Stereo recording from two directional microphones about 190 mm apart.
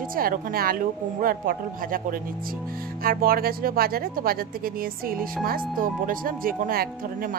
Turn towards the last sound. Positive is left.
turn(degrees=-50)  # may be behind; listen again after turning